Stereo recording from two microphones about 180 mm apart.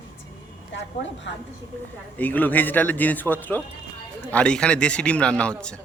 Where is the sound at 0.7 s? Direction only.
80° left.